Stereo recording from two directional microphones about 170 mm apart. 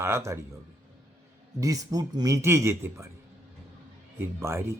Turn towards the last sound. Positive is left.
turn(degrees=-15)  # may be behind; listen again after turning